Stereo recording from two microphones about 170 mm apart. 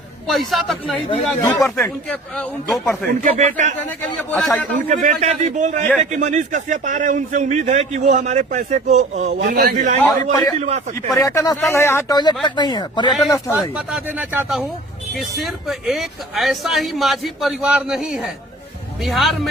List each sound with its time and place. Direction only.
0.3 s speech: centre (ahead or behind)
3.2 s speech: 45° right (ahead or behind)
4.0 s a man's voice: 10° left (ahead or behind)
4.9 s speech: 40° right (ahead or behind)
9.6 s a man's voice: 55° right (ahead or behind)
11.2 s speech: 20° left (ahead or behind)
13.5 s speech: 5° right (ahead or behind)